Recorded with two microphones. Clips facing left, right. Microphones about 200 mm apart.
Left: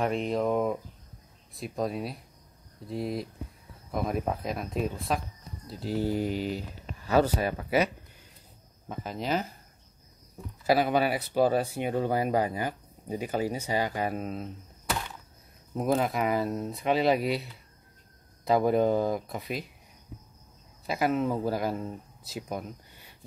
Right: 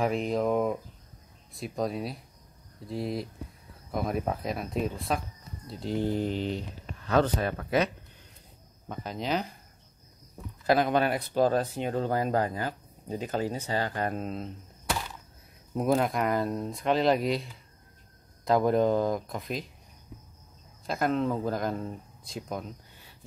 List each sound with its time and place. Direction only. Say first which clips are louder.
0.0 s speech: even; centre (ahead or behind)
10.7 s speech: even; 5° left (ahead or behind)
20.8 s speech: even; 5° left (ahead or behind)